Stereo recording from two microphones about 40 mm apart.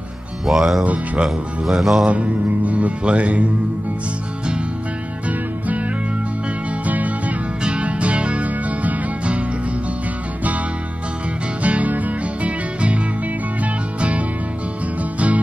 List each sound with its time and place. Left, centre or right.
0.5 s music: centre
2.0 s music: right
6.9 s music: right
11.6 s music: right